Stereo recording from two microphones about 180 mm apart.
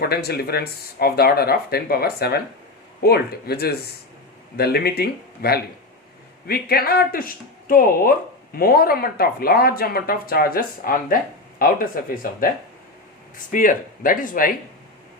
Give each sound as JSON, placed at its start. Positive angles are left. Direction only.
{"t": 0.0, "sound": "speech", "side_deg": 60}
{"t": 13.5, "sound": "speech", "side_deg": 50}